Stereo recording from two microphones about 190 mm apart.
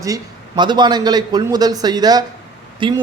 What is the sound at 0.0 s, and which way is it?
Speech, 20° right (ahead or behind).